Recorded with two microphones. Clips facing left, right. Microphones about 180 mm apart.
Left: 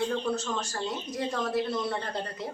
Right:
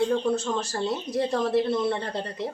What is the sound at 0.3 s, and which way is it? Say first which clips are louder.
Speech: right 5 dB; 30° right (ahead or behind).